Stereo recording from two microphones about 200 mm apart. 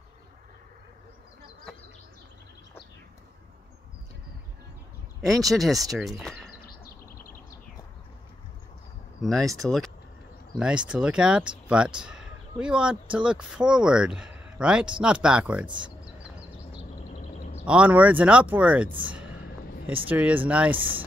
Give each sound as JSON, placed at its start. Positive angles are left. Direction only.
{"t": 5.3, "sound": "speech", "side_deg": 0}
{"t": 6.6, "sound": "a sound", "side_deg": 50}
{"t": 9.2, "sound": "speech", "side_deg": 0}
{"t": 17.6, "sound": "speech", "side_deg": -5}
{"t": 19.0, "sound": "a sound", "side_deg": -5}
{"t": 20.1, "sound": "speech", "side_deg": -10}